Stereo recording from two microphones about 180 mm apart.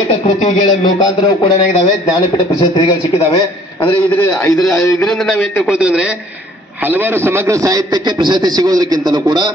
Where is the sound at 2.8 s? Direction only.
25° left (ahead or behind).